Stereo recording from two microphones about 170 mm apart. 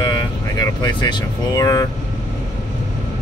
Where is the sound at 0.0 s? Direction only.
25° left (ahead or behind).